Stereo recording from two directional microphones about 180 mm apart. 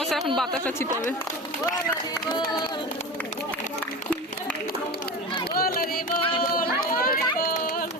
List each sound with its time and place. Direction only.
0.0 s a sound: centre (ahead or behind)
5.5 s music: 55° left (ahead or behind)
6.6 s run: 55° left (ahead or behind)